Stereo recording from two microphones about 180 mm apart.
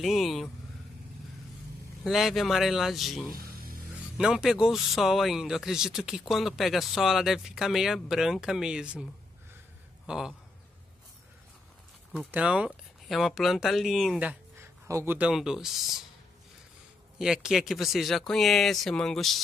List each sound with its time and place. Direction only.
0.0 s speech: centre (ahead or behind)
2.0 s speech: centre (ahead or behind)
3.3 s a sound: 55° right (ahead or behind)
4.2 s speech: 5° right (ahead or behind)
10.0 s a man's voice: 5° right (ahead or behind)
12.1 s speech: 5° right (ahead or behind)
17.2 s speech: 5° right (ahead or behind)